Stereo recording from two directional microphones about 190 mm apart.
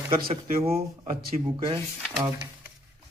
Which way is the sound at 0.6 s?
30° right (ahead or behind).